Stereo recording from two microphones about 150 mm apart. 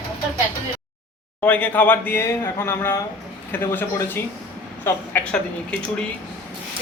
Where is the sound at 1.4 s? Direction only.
10° left (ahead or behind).